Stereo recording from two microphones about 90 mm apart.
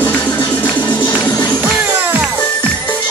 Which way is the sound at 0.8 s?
20° left (ahead or behind).